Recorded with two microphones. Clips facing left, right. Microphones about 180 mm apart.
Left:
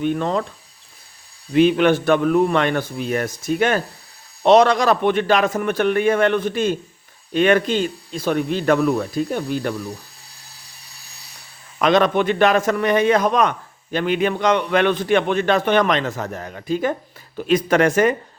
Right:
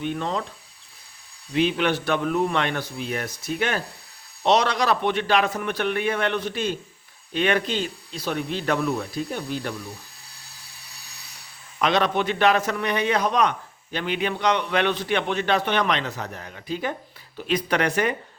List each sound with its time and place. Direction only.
0.0 s a man's voice: 50° left (ahead or behind)
1.5 s a man's voice: 50° left (ahead or behind)
11.8 s a man's voice: 50° left (ahead or behind)